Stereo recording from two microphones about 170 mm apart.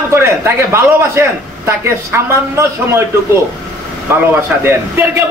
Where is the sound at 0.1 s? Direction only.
15° right (ahead or behind).